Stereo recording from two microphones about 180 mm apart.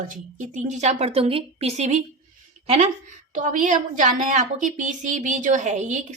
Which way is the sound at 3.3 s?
45° right (ahead or behind).